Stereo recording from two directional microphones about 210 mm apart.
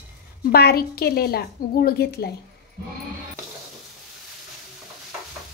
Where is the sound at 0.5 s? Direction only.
50° left (ahead or behind).